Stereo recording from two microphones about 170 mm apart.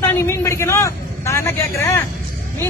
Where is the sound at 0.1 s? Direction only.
15° left (ahead or behind).